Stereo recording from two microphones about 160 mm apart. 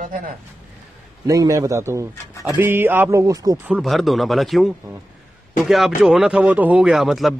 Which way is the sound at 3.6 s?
5° right (ahead or behind).